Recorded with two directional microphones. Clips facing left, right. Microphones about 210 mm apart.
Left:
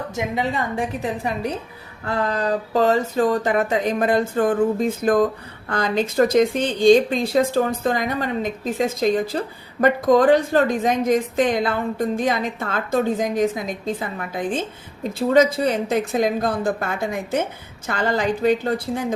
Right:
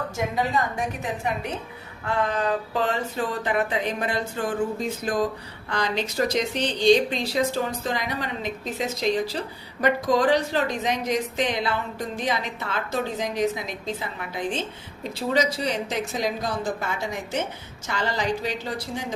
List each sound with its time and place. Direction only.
0.8 s a woman's voice: 35° left (ahead or behind); by 19.0 s 55° left (ahead or behind)